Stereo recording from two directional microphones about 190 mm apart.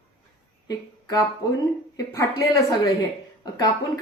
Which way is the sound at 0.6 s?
20° left (ahead or behind).